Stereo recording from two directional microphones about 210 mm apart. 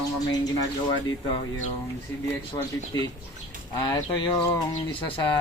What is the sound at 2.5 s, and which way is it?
Speech, 15° left (ahead or behind).